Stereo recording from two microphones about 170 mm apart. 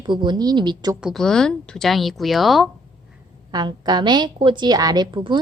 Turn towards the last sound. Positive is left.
turn(degrees=-30)  # may be behind; listen again after turning